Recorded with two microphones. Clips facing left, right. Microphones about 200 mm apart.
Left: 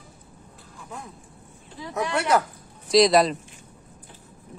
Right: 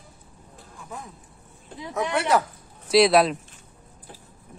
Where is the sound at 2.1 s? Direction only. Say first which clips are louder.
Even; centre (ahead or behind).